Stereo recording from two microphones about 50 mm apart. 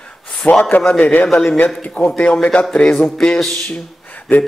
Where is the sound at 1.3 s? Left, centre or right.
Centre.